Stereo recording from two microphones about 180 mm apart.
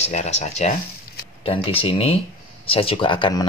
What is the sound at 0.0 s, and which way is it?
Speech, 40° left (ahead or behind).